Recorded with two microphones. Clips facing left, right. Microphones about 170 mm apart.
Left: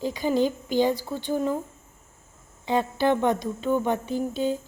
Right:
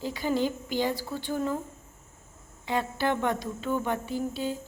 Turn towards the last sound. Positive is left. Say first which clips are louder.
# left 5 dB
turn(degrees=20)  # may be behind; listen again after turning